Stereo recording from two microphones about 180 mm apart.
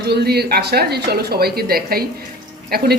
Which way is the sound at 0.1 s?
65° right (ahead or behind).